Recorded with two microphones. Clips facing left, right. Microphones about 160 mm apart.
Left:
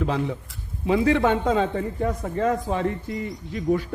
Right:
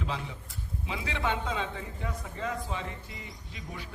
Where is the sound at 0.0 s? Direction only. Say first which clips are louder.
Left 11 dB; 55° left (ahead or behind).